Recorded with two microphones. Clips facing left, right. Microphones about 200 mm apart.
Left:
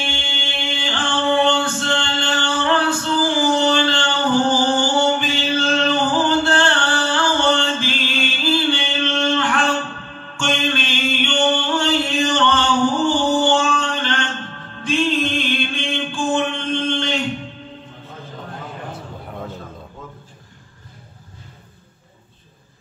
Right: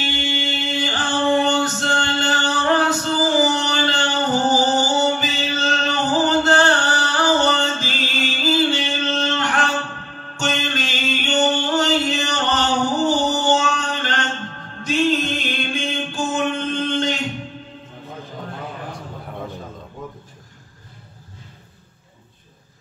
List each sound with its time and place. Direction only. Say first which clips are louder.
0.0 s music: right 4 dB; 40° right (ahead or behind)